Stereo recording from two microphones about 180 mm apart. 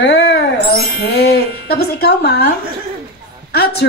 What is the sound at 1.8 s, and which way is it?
Speech, 60° left (ahead or behind).